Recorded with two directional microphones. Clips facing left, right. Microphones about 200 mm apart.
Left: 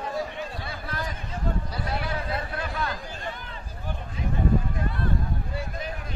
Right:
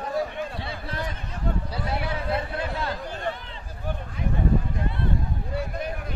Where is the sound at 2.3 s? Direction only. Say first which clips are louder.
Right 3 dB; 25° right (ahead or behind).